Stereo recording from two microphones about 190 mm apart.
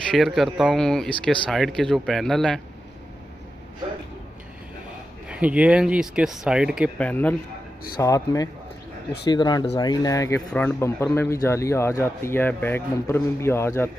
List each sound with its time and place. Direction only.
0.1 s speech: centre (ahead or behind)
5.3 s speech: 5° right (ahead or behind)
7.0 s a man's voice: 10° left (ahead or behind)